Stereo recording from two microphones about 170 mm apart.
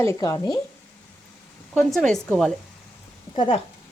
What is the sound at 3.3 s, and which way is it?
Speech, 30° left (ahead or behind).